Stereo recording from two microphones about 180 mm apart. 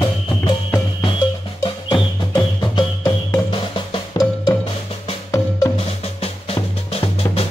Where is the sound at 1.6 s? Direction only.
25° left (ahead or behind).